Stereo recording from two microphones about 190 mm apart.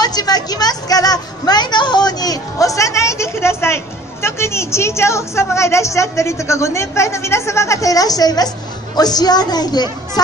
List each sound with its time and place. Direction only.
0.0 s a woman's voice: 20° left (ahead or behind)